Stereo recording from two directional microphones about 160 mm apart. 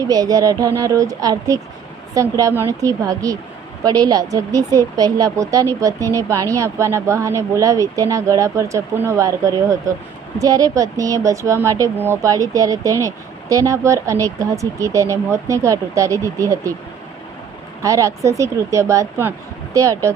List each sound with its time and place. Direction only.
0.0 s a woman's voice: 25° right (ahead or behind)
17.8 s a woman's voice: 20° right (ahead or behind)